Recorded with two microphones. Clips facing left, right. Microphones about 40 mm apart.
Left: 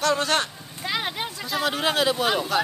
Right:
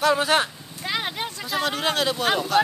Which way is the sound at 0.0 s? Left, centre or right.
Centre.